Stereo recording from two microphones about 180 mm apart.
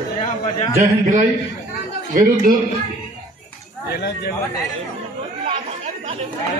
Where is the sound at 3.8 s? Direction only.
65° left (ahead or behind).